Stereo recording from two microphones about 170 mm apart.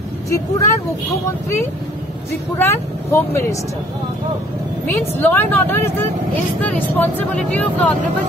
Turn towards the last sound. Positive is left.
turn(degrees=10)  # may be behind; listen again after turning